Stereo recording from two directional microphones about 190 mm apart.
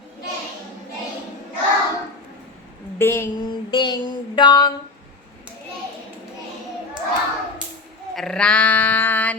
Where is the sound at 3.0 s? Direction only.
15° left (ahead or behind).